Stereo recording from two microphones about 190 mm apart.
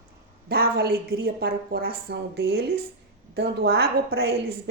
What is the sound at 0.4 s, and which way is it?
Speech, 55° right (ahead or behind).